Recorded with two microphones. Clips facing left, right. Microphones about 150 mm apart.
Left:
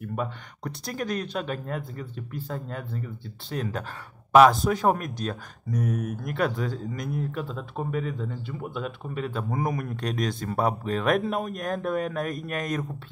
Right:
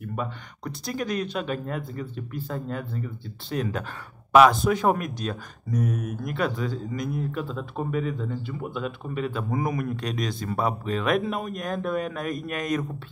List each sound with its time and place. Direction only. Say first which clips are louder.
0.7 s speech: right 1 dB; 50° left (ahead or behind)
7.9 s speech: right 3 dB; 40° left (ahead or behind)